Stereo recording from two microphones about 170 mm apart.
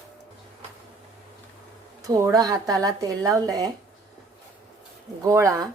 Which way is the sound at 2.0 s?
20° right (ahead or behind).